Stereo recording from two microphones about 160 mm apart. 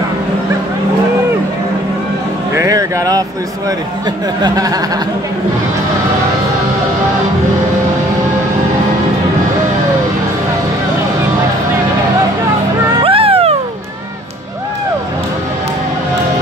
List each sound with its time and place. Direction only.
2.5 s music: 20° right (ahead or behind)
4.4 s a sound: 25° right (ahead or behind)
13.0 s cat: 35° right (ahead or behind)